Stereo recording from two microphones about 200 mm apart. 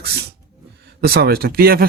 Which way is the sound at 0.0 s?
55° right (ahead or behind).